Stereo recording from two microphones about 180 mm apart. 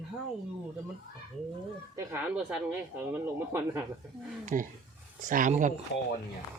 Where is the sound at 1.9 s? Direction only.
10° right (ahead or behind).